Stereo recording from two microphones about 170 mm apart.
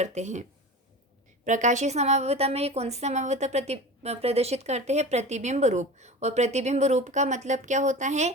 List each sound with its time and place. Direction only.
0.0 s speech: 40° right (ahead or behind)
1.5 s a woman's voice: 45° right (ahead or behind)